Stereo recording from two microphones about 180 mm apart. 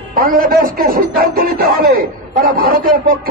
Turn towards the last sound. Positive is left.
turn(degrees=-50)  # may be behind; listen again after turning